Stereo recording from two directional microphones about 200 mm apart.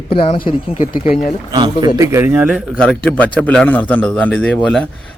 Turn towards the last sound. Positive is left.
turn(degrees=5)  # may be behind; listen again after turning